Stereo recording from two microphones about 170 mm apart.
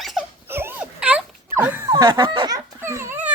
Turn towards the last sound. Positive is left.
turn(degrees=-10)  # may be behind; listen again after turning